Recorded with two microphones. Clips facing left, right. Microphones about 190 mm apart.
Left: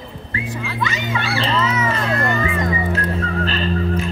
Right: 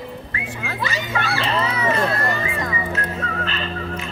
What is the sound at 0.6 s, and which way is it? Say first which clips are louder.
Children playing: even; 35° right (ahead or behind).